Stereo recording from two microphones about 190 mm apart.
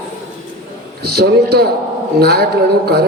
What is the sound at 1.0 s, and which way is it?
A man's voice, 55° right (ahead or behind).